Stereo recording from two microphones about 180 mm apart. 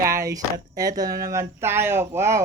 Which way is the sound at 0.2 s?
20° right (ahead or behind).